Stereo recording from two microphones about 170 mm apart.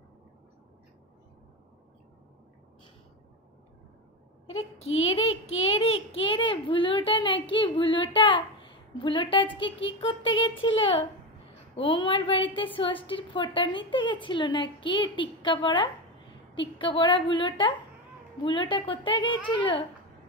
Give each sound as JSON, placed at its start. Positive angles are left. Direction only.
{"t": 4.9, "sound": "a child's voice", "side_deg": 35}